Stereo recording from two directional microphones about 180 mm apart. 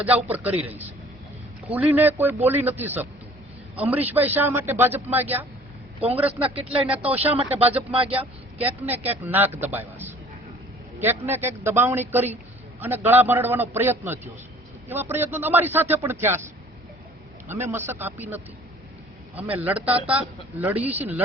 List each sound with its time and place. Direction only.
0.3 s a man's voice: 10° right (ahead or behind)
6.4 s speech: 30° right (ahead or behind)
6.8 s a man's voice: 10° right (ahead or behind)
7.2 s speech: 30° right (ahead or behind)
8.2 s a man's voice: 10° right (ahead or behind)
17.5 s a man's voice: 10° right (ahead or behind)
19.4 s a man's voice: 10° right (ahead or behind)